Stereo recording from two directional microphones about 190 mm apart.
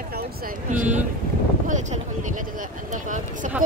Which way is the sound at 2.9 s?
40° right (ahead or behind).